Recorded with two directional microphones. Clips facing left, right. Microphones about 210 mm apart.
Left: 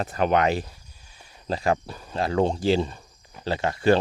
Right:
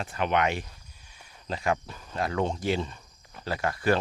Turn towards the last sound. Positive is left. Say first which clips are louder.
# left 5 dB
turn(degrees=25)  # may be behind; listen again after turning